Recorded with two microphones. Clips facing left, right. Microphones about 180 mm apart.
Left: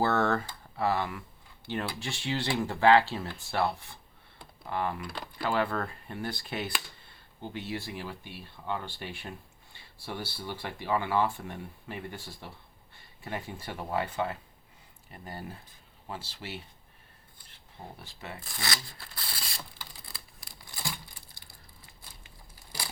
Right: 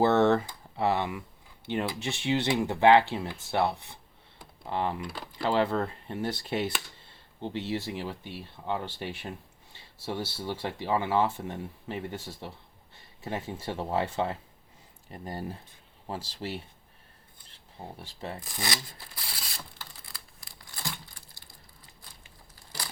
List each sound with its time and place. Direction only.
0.0 s speech: 20° right (ahead or behind)
17.8 s speech: 15° right (ahead or behind)
18.3 s a sound: 15° right (ahead or behind)
20.7 s crumpling: 5° left (ahead or behind)